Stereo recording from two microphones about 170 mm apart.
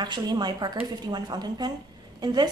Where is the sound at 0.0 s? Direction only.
25° right (ahead or behind).